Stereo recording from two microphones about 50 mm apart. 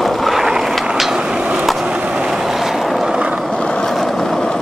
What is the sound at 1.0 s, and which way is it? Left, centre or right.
Vehicle, centre.